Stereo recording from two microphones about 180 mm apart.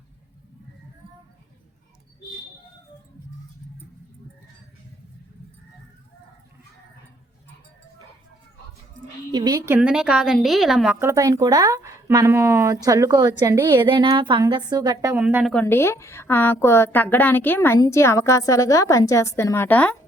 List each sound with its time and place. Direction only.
9.3 s a woman's voice: 20° right (ahead or behind); by 10.9 s centre (ahead or behind)
11.0 s speech: 15° right (ahead or behind)
15.1 s a woman's voice: 10° right (ahead or behind)
15.5 s a woman's voice: 15° left (ahead or behind)